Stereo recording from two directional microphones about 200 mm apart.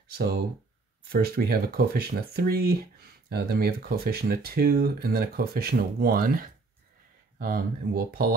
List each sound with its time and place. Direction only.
0.1 s speech: 50° right (ahead or behind)